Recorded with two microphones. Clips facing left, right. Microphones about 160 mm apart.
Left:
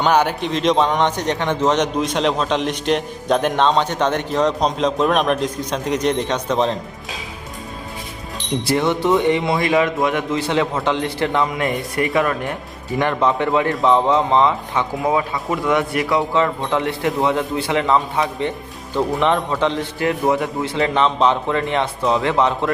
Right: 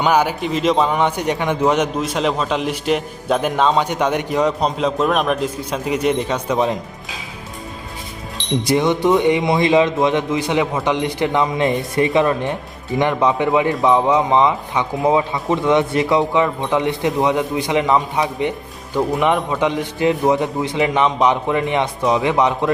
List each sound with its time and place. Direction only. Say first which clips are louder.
0.0 s a man's voice: even; 10° right (ahead or behind)
8.6 s a man's voice: right 2 dB; 15° right (ahead or behind)